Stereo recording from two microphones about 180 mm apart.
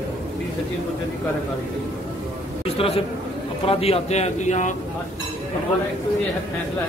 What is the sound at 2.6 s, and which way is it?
A man's voice, 30° left (ahead or behind).